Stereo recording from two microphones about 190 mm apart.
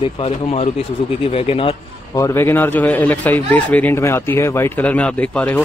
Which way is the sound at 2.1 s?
15° left (ahead or behind).